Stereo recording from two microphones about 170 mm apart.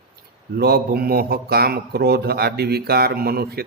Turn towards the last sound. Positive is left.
turn(degrees=-65)  # may be behind; listen again after turning